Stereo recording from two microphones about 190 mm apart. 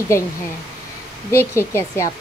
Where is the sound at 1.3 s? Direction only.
15° left (ahead or behind).